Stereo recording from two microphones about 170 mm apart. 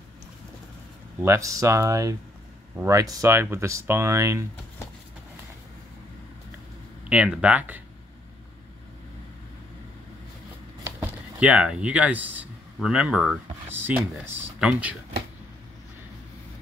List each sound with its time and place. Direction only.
1.2 s speech: 15° right (ahead or behind)
7.1 s speech: 5° right (ahead or behind)
10.8 s speech: 10° right (ahead or behind)